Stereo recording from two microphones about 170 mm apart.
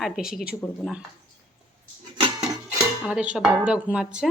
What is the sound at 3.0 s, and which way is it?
Dishes, 5° right (ahead or behind).